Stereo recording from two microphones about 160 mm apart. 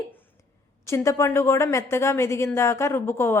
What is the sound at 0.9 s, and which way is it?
A woman's voice, 15° left (ahead or behind).